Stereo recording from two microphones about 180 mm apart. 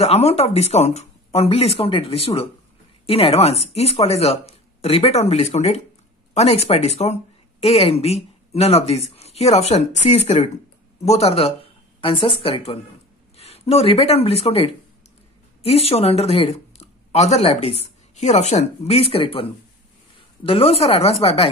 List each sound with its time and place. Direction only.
0.0 s a woman's voice: 35° left (ahead or behind)
20.4 s speech: 30° left (ahead or behind)